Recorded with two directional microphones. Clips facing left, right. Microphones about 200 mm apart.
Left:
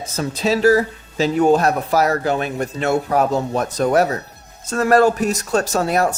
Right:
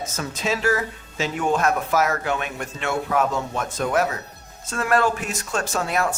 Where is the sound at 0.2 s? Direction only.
35° left (ahead or behind).